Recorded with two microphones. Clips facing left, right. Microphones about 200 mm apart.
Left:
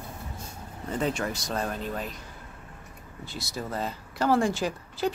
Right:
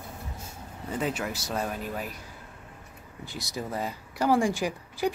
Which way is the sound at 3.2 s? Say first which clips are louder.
Even; 15° right (ahead or behind).